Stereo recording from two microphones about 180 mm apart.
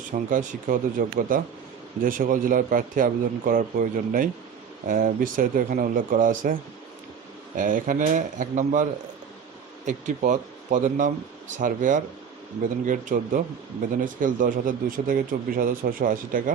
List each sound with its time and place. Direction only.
0.3 s speech: 45° right (ahead or behind)